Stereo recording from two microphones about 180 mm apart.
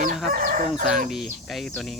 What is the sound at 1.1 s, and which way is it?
Speech, centre (ahead or behind).